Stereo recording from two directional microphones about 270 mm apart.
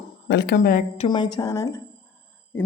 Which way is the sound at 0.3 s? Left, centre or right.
Left.